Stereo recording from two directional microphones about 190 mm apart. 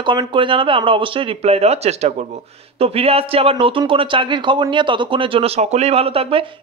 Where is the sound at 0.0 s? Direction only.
25° right (ahead or behind).